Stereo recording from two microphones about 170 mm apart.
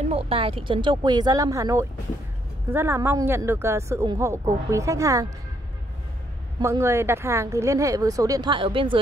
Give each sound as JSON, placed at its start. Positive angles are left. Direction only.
{"t": 0.1, "sound": "a woman's voice", "side_deg": -35}
{"t": 6.6, "sound": "speech", "side_deg": -15}